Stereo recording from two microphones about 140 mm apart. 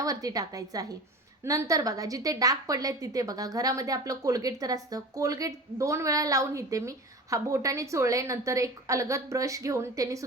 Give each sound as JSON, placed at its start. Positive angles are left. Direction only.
{"t": 0.0, "sound": "a woman's voice", "side_deg": -25}